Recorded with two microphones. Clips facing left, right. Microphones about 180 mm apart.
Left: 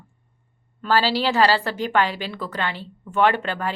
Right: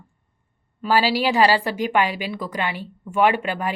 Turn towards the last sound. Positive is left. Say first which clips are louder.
# right 1 dB
turn(degrees=-10)  # may be behind; listen again after turning